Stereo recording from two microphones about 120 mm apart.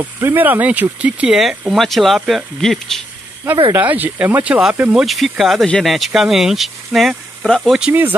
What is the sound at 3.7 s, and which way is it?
Speech, 15° right (ahead or behind).